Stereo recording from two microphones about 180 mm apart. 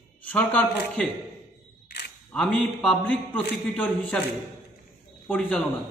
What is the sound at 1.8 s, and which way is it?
Single-lens reflex camera, 65° left (ahead or behind).